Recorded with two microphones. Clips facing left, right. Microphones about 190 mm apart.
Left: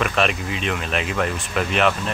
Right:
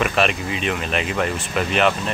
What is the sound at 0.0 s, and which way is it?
Speech, 5° right (ahead or behind).